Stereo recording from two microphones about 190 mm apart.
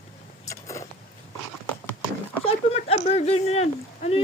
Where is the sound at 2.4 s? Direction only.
30° left (ahead or behind).